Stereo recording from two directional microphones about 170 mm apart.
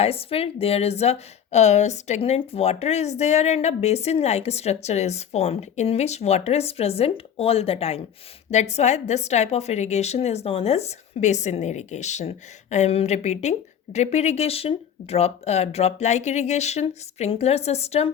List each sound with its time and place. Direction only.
0.0 s a woman's voice: 35° left (ahead or behind)